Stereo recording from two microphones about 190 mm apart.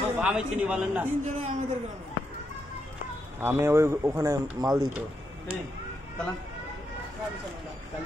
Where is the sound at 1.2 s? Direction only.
40° right (ahead or behind).